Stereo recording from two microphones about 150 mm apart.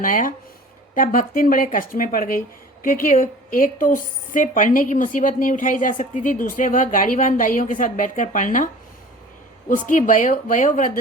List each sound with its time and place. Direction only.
0.0 s a woman's voice: 65° left (ahead or behind)